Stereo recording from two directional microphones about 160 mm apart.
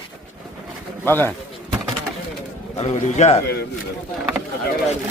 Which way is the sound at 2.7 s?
40° left (ahead or behind).